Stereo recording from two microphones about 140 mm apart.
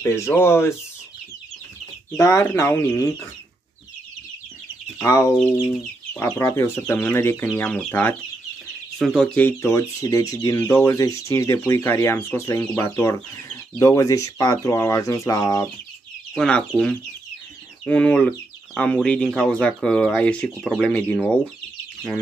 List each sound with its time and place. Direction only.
0.0 s speech: 15° left (ahead or behind)
2.0 s speech: 20° left (ahead or behind)
5.0 s speech: 20° left (ahead or behind)
16.3 s speech: 10° left (ahead or behind)